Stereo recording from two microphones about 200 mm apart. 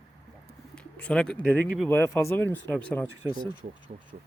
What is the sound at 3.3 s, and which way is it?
Speech, 20° right (ahead or behind).